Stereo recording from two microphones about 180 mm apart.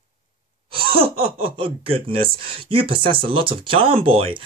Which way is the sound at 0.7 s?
30° right (ahead or behind).